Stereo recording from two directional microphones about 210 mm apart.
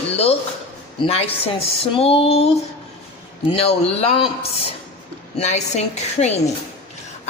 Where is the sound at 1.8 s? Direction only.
30° left (ahead or behind).